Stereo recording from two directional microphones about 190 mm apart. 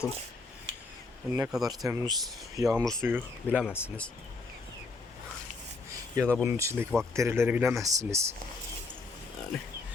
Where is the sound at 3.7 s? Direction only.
10° left (ahead or behind).